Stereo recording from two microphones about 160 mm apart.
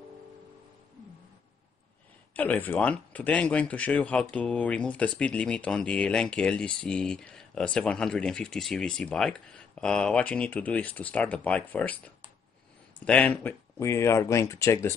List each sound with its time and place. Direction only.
2.3 s speech: 10° left (ahead or behind)
13.0 s speech: 10° left (ahead or behind)